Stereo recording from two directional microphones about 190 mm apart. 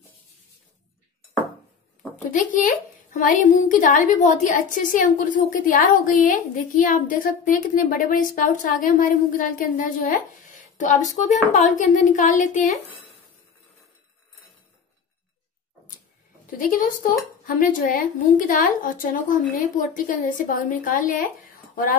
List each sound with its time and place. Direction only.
2.3 s a woman's voice: 40° left (ahead or behind)
16.4 s a woman's voice: 45° left (ahead or behind)